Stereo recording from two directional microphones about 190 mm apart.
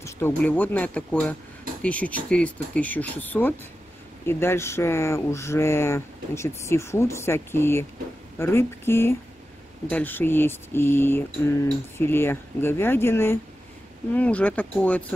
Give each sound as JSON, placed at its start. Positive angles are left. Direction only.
{"t": 0.0, "sound": "speech", "side_deg": 10}